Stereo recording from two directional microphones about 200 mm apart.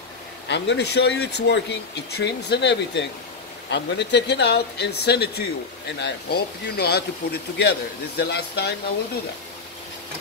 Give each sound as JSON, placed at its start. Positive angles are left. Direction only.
{"t": 0.5, "sound": "speech", "side_deg": 60}